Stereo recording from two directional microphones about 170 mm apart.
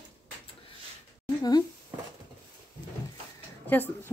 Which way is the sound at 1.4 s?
25° left (ahead or behind).